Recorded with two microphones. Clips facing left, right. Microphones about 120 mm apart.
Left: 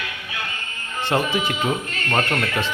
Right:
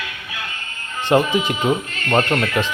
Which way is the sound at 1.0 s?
15° right (ahead or behind).